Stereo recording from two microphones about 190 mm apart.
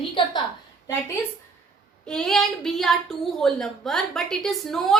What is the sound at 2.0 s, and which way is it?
A woman's voice, 5° left (ahead or behind).